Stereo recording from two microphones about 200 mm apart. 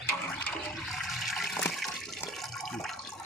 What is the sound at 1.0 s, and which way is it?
Toilet flush, centre (ahead or behind).